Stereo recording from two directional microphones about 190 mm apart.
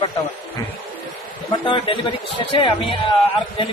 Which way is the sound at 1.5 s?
25° left (ahead or behind).